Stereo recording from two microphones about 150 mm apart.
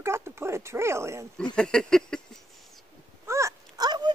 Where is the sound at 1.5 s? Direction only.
5° left (ahead or behind).